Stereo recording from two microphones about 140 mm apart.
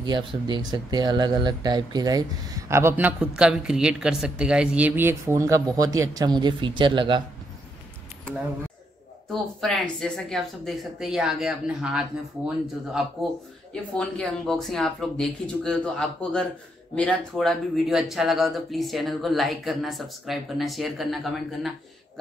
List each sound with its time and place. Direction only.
0.0 s speech: 30° right (ahead or behind)
9.3 s speech: centre (ahead or behind)
13.9 s speech: 5° left (ahead or behind)